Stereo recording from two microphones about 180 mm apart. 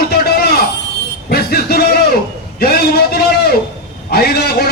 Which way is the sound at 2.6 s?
60° left (ahead or behind).